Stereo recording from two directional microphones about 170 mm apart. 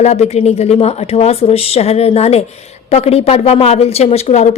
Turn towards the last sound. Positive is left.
turn(degrees=40)  # may be behind; listen again after turning